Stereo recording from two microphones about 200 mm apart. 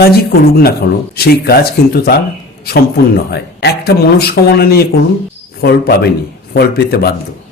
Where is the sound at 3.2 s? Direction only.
55° left (ahead or behind).